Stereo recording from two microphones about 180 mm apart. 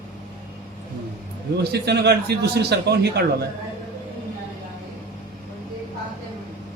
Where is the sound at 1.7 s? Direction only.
65° right (ahead or behind).